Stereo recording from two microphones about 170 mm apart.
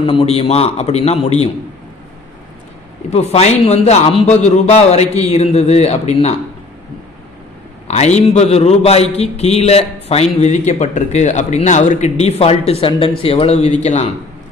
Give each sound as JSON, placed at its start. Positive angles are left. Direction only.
{"t": 0.0, "sound": "a man's voice", "side_deg": 35}
{"t": 3.1, "sound": "a man's voice", "side_deg": 40}
{"t": 7.9, "sound": "a man's voice", "side_deg": 40}